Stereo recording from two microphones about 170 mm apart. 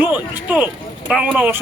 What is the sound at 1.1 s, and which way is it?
Speech, 5° right (ahead or behind).